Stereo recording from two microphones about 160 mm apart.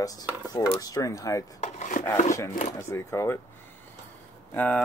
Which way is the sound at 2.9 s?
15° left (ahead or behind).